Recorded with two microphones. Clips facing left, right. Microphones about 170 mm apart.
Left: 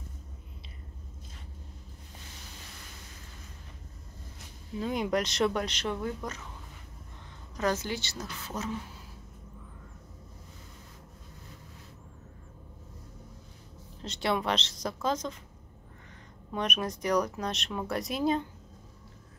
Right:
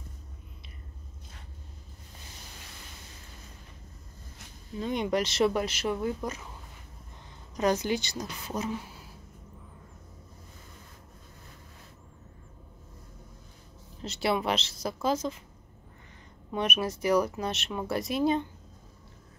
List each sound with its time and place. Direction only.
4.7 s speech: 5° left (ahead or behind)
7.5 s a woman's voice: 15° right (ahead or behind)
14.0 s a woman's voice: 5° right (ahead or behind)
16.5 s speech: 5° right (ahead or behind)